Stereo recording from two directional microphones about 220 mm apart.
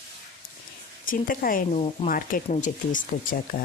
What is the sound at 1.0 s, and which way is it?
Speech, 40° left (ahead or behind).